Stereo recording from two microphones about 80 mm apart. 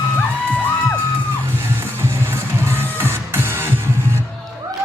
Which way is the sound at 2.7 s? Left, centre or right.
Right.